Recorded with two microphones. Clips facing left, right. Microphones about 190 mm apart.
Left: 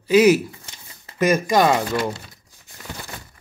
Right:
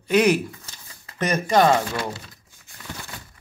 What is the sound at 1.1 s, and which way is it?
Speech, 10° left (ahead or behind).